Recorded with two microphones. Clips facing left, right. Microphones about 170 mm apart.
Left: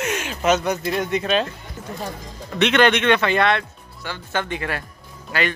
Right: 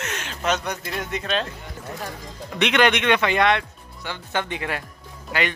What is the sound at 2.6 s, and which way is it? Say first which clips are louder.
Speech: left 3 dB; 15° right (ahead or behind).